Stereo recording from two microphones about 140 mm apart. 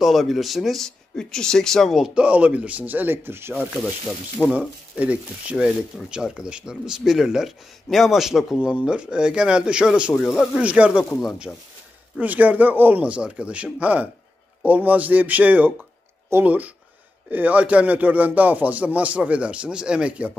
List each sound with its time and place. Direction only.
0.0 s speech: centre (ahead or behind)
10.3 s speech: 15° left (ahead or behind)
10.6 s speech: 10° right (ahead or behind)
11.5 s speech: 10° left (ahead or behind)
12.2 s speech: 10° right (ahead or behind)